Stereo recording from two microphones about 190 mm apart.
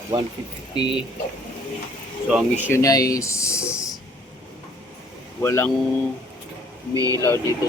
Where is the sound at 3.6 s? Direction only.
15° left (ahead or behind).